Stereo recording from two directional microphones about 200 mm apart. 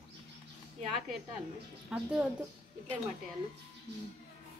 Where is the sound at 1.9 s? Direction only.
5° right (ahead or behind).